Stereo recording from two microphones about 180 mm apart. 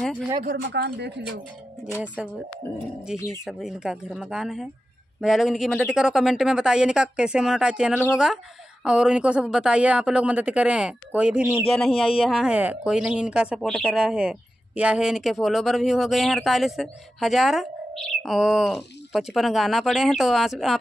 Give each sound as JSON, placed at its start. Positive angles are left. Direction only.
{"t": 0.7, "sound": "speech", "side_deg": -65}
{"t": 2.2, "sound": "speech", "side_deg": -5}